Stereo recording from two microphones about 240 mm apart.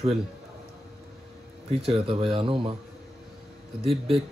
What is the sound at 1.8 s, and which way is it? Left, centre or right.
Speech, right.